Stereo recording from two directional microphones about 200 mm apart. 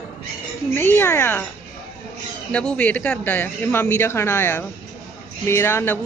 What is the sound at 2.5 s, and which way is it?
Speech, 5° left (ahead or behind).